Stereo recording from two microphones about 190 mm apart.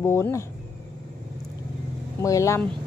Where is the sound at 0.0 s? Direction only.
15° left (ahead or behind).